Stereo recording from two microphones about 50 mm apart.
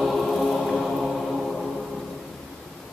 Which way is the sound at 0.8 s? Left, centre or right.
Centre.